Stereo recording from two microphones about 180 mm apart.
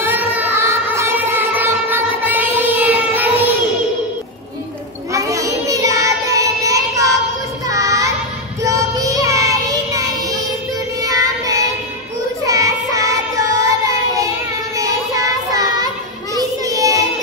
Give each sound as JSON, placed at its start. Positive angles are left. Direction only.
{"t": 0.0, "sound": "music", "side_deg": -10}
{"t": 5.1, "sound": "child singing", "side_deg": -15}